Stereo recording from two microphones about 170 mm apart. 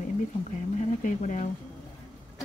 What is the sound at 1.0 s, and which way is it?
Speech, 45° left (ahead or behind).